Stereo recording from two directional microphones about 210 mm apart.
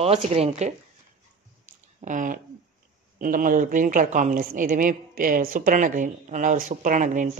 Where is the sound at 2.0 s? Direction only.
40° right (ahead or behind).